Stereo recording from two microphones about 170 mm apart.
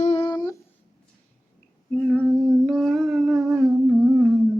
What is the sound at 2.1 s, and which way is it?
Humming, 5° left (ahead or behind).